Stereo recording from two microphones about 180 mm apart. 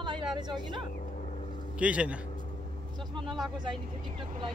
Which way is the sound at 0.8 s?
50° left (ahead or behind).